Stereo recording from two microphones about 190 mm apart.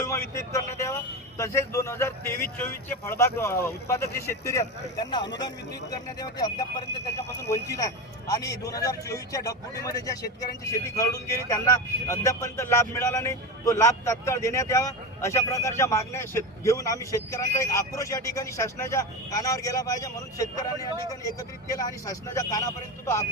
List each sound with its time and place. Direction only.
0.0 s speech: 15° left (ahead or behind)
8.3 s speech: 20° left (ahead or behind)